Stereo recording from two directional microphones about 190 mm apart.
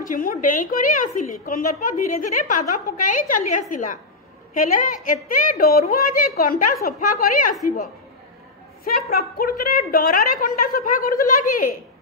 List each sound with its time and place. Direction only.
0.0 s a woman's voice: 45° left (ahead or behind)
8.8 s a woman's voice: 50° left (ahead or behind)